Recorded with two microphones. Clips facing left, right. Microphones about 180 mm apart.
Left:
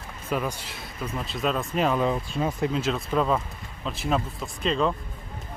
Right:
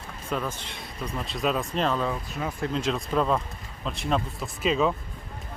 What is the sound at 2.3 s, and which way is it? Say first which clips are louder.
Speech: left 4 dB; 25° left (ahead or behind).